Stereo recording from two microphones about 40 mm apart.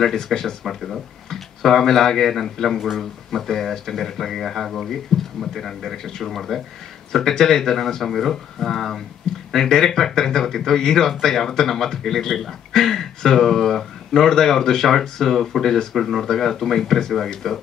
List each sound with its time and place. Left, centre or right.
0.1 s speech: centre